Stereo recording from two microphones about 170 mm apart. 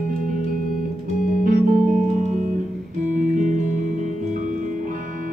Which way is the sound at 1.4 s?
55° right (ahead or behind).